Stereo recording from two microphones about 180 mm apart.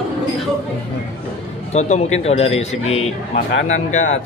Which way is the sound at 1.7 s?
40° left (ahead or behind).